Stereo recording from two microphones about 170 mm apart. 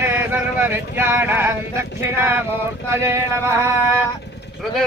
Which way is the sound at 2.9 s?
15° right (ahead or behind).